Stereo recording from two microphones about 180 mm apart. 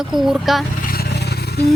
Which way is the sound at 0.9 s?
65° left (ahead or behind).